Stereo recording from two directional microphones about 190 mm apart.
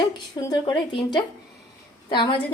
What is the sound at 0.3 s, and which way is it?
A woman's voice, 20° left (ahead or behind).